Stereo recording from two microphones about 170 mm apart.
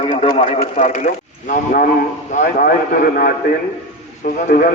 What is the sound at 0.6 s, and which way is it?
A man's voice, 50° left (ahead or behind).